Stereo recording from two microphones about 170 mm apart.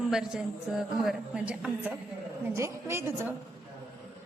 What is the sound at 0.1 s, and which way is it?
A woman's voice, 5° right (ahead or behind).